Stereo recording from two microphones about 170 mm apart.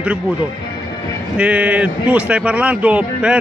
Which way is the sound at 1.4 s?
5° right (ahead or behind).